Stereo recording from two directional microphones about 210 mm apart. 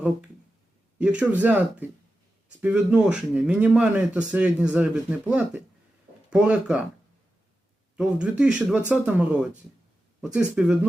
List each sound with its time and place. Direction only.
0.9 s speech: 5° right (ahead or behind)
7.9 s speech: 5° right (ahead or behind)